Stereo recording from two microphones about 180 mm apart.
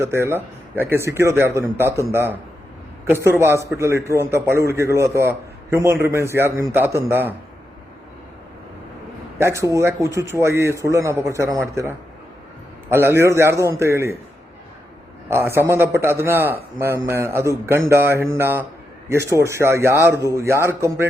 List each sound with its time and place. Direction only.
0.0 s speech: 15° right (ahead or behind)
3.2 s speech: 15° right (ahead or behind)
9.4 s speech: 15° right (ahead or behind)
15.3 s a man's voice: 15° right (ahead or behind)